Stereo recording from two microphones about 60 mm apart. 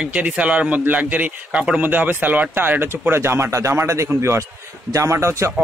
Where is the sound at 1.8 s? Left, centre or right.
Right.